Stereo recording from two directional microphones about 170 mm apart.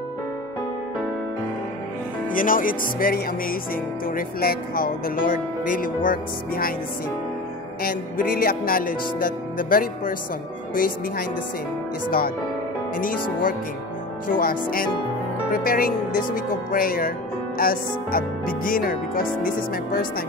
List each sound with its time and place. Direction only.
2.3 s speech: 55° left (ahead or behind)
7.8 s speech: 55° left (ahead or behind)
12.9 s speech: 55° left (ahead or behind)